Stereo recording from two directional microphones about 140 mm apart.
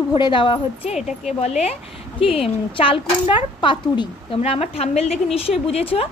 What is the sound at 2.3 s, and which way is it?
A woman's voice, 40° left (ahead or behind).